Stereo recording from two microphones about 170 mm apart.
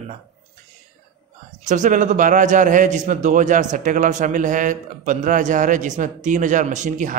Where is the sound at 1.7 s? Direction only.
45° right (ahead or behind).